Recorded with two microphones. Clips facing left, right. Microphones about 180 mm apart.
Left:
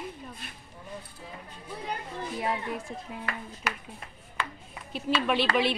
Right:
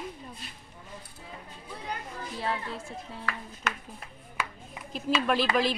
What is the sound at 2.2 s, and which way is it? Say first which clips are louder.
Speech: left 2 dB; 20° left (ahead or behind).